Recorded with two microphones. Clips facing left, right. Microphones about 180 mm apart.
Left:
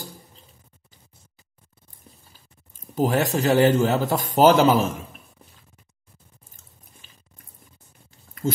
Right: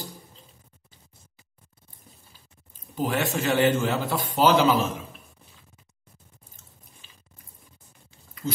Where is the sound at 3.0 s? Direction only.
40° left (ahead or behind).